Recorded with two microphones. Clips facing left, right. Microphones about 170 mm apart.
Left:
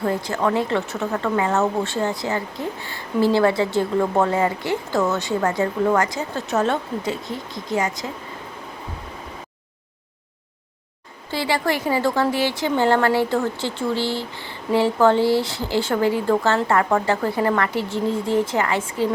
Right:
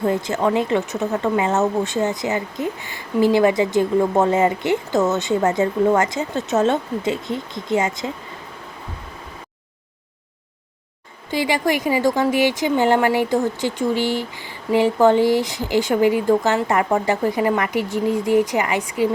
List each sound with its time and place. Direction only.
0.0 s a woman's voice: 20° right (ahead or behind)
11.3 s speech: 15° right (ahead or behind)